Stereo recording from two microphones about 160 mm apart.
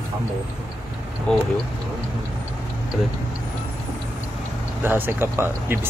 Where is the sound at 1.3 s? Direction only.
5° left (ahead or behind).